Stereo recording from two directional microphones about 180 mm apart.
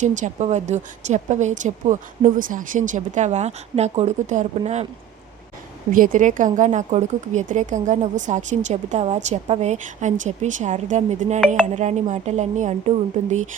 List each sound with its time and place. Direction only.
0.0 s speech: 40° right (ahead or behind)
5.9 s speech: 50° right (ahead or behind)